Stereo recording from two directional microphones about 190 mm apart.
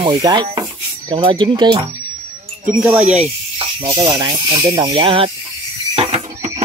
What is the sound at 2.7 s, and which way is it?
Speech, 5° right (ahead or behind).